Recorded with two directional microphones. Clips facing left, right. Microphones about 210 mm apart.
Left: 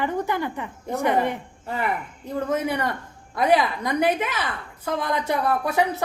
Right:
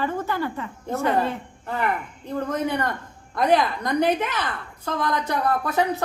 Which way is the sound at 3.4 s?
5° left (ahead or behind).